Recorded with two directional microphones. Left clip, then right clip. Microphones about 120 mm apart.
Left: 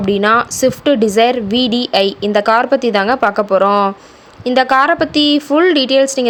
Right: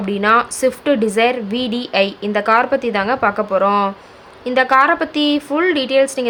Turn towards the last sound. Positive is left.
turn(degrees=40)  # may be behind; listen again after turning